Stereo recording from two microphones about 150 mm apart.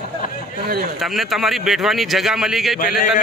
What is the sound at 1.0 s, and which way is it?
A man's voice, centre (ahead or behind).